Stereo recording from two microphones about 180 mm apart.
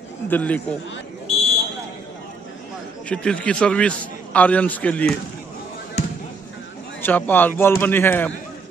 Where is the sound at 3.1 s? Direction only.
5° left (ahead or behind).